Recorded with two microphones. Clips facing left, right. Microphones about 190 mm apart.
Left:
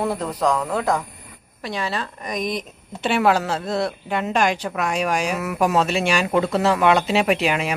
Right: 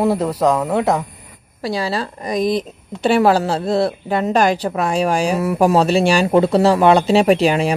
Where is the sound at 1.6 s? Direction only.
35° right (ahead or behind).